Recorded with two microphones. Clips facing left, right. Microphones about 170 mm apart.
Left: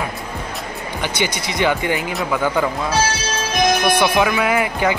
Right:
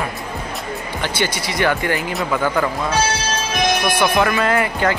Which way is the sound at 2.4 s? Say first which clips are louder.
Left 1 dB; 15° left (ahead or behind).